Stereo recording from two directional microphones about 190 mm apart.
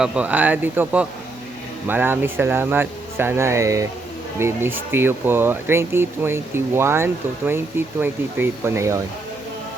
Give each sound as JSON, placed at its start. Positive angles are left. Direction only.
{"t": 0.0, "sound": "speech", "side_deg": -5}